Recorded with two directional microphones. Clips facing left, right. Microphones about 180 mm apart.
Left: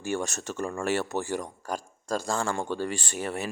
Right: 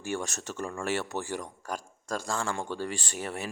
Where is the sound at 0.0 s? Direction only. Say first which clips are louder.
Left 3 dB; 45° left (ahead or behind).